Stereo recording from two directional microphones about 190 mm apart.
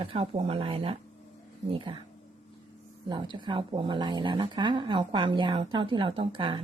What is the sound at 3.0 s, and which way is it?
Speech, 25° right (ahead or behind).